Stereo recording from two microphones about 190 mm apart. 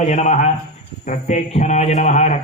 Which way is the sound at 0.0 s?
35° left (ahead or behind).